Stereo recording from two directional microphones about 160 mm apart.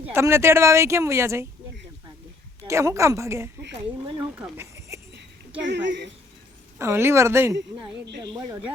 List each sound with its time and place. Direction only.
0.0 s speech: 15° right (ahead or behind)
2.6 s speech: 20° right (ahead or behind)
5.6 s a woman's voice: 90° right
6.7 s speech: 15° right (ahead or behind)